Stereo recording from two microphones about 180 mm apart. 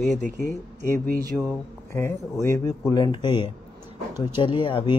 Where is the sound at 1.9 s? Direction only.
15° left (ahead or behind).